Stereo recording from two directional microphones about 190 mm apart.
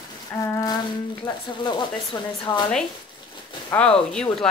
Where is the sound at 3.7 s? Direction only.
5° left (ahead or behind).